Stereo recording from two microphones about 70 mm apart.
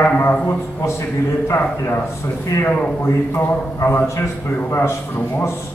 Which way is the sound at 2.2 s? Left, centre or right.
Left.